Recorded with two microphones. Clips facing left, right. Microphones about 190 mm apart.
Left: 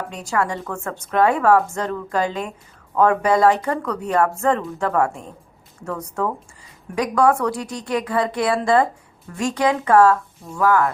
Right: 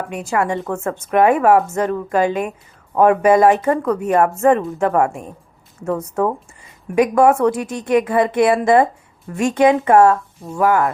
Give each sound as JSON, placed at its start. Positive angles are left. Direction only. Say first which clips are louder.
{"t": 0.1, "sound": "a woman's voice", "louder": "right 4 dB", "side_deg": -20}